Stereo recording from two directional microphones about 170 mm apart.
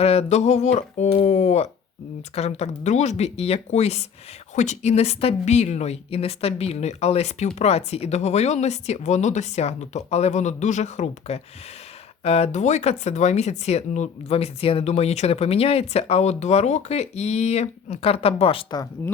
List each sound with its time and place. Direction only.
0.0 s speech: 35° left (ahead or behind)